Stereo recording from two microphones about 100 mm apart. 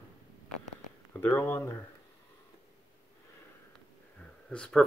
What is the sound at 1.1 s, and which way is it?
Speech, 25° left (ahead or behind).